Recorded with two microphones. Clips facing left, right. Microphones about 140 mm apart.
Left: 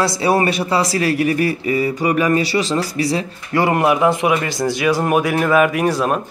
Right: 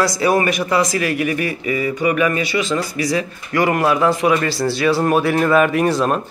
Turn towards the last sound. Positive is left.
turn(degrees=10)  # may be behind; listen again after turning